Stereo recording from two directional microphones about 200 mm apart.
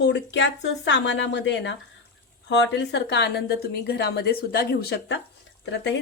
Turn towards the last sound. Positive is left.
turn(degrees=60)  # may be behind; listen again after turning